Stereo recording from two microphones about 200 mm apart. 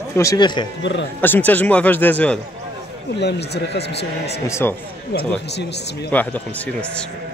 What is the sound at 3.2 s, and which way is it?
Speech, 55° left (ahead or behind).